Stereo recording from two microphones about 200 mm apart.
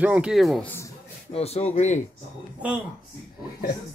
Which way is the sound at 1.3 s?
30° left (ahead or behind).